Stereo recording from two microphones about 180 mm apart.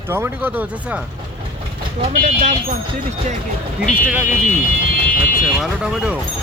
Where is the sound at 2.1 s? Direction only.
50° right (ahead or behind).